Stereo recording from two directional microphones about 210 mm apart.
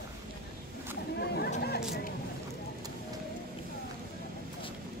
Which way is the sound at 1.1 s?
50° left (ahead or behind).